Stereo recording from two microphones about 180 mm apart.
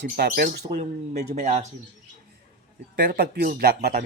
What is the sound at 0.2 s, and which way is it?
Speech, 55° right (ahead or behind).